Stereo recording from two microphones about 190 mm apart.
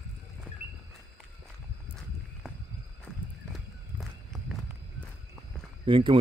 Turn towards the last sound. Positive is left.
turn(degrees=-25)  # may be behind; listen again after turning